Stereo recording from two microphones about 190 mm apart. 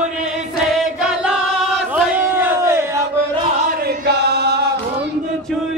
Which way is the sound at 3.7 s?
55° right (ahead or behind).